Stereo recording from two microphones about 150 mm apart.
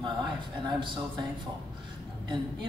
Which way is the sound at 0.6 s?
30° right (ahead or behind).